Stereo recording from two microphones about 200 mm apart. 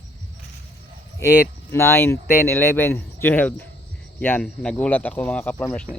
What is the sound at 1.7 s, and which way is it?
Speech, 10° left (ahead or behind).